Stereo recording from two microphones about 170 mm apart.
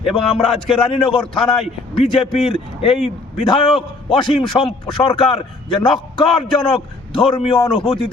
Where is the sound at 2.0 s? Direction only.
30° left (ahead or behind).